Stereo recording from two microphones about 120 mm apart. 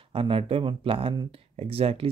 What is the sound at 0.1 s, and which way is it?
Speech, 50° right (ahead or behind).